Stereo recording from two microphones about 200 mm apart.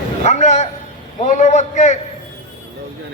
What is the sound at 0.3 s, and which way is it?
A man's voice, 35° left (ahead or behind).